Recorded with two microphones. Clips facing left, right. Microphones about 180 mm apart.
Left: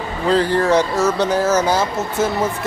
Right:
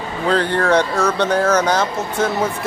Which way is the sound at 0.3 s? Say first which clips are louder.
Left 1 dB; centre (ahead or behind).